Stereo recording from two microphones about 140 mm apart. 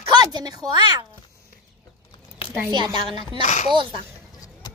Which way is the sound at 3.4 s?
55° left (ahead or behind).